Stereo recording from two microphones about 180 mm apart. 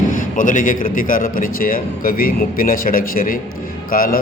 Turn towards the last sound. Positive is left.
turn(degrees=55)  # may be behind; listen again after turning